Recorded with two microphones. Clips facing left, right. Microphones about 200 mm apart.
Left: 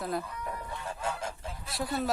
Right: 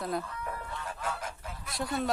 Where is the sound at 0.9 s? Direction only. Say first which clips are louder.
Left 3 dB; 25° left (ahead or behind).